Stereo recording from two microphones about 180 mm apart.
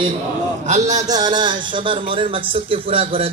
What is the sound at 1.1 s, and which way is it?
A man's voice, 25° right (ahead or behind).